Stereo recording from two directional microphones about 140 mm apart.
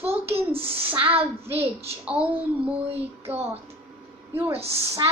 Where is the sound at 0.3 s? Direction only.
40° right (ahead or behind).